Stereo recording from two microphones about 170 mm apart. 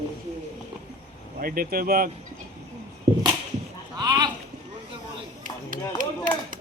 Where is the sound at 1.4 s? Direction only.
60° right (ahead or behind).